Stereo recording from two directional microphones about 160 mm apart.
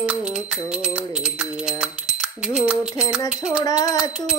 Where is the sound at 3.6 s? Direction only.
25° left (ahead or behind).